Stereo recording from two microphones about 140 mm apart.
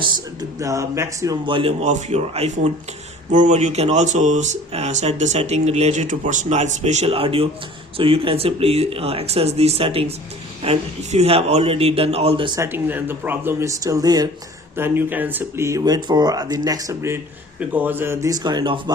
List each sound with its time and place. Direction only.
0.6 s speech: 20° right (ahead or behind)
1.5 s speech: 35° right (ahead or behind)
1.8 s speech: 60° right (ahead or behind); by 12.5 s 40° right (ahead or behind)
12.5 s speech: 15° right (ahead or behind)
14.8 s speech: 15° right (ahead or behind); by 18.9 s 35° right (ahead or behind)